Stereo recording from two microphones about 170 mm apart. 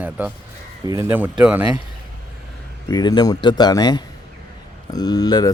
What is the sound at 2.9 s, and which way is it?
Speech, 25° left (ahead or behind).